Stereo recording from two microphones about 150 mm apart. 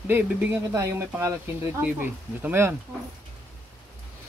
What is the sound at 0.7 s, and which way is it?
Speech, 20° right (ahead or behind).